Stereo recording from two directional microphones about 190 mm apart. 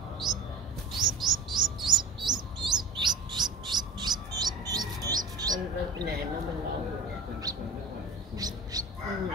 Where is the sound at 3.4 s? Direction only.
20° right (ahead or behind).